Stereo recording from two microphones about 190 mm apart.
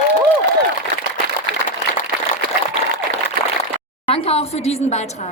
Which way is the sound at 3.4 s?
50° right (ahead or behind).